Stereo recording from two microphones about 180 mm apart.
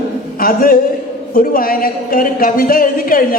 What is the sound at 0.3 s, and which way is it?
Speech, 50° left (ahead or behind).